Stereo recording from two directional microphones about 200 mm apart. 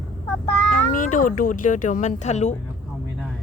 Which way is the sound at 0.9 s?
40° left (ahead or behind).